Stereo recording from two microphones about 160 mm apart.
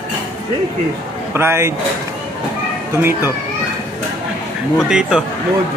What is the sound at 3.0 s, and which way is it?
Speech, 15° right (ahead or behind).